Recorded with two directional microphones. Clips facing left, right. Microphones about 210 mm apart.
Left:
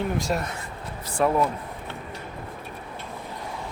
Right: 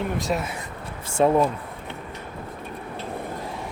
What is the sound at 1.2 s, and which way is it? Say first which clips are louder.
Speech: right 3 dB; 25° right (ahead or behind).